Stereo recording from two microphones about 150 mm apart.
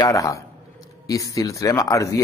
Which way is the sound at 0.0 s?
20° left (ahead or behind).